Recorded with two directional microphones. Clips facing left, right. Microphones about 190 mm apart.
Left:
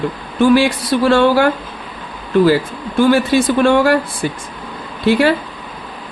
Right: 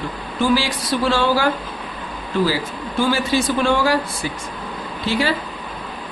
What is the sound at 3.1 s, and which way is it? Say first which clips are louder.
Speech: left 6 dB; 55° left (ahead or behind).